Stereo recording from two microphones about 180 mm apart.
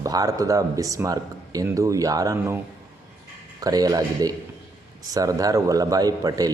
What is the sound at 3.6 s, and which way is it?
A man's voice, 20° right (ahead or behind).